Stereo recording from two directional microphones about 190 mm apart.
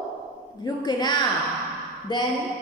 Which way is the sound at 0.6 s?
20° left (ahead or behind).